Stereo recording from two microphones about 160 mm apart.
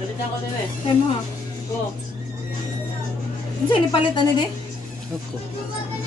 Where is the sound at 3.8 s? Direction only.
30° left (ahead or behind).